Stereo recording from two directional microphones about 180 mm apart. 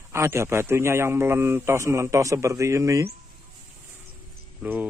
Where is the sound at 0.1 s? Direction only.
15° right (ahead or behind).